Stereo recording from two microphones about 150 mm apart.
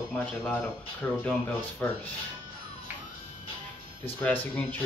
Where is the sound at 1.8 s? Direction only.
15° left (ahead or behind).